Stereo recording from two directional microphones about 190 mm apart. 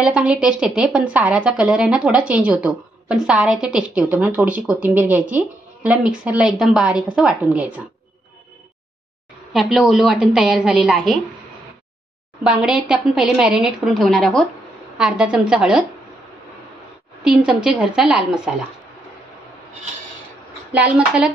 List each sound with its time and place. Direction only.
0.1 s a woman's voice: 5° right (ahead or behind)
9.5 s a woman's voice: centre (ahead or behind)
12.4 s a woman's voice: 5° right (ahead or behind)
17.2 s a woman's voice: 5° right (ahead or behind)
20.7 s a woman's voice: 5° right (ahead or behind)